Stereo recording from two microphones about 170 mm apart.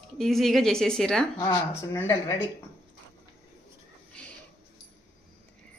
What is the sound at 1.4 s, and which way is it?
Speech, 25° left (ahead or behind).